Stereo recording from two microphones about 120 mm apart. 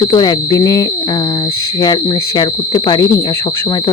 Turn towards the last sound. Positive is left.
turn(degrees=35)  # may be behind; listen again after turning